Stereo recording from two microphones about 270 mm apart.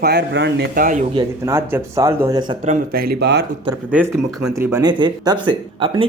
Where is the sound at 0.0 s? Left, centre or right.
Right.